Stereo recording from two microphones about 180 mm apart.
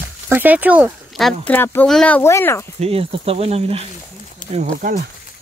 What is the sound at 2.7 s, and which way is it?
Speech, 35° right (ahead or behind).